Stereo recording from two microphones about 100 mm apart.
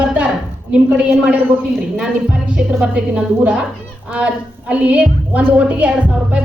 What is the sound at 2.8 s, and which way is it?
A woman's voice, 10° right (ahead or behind).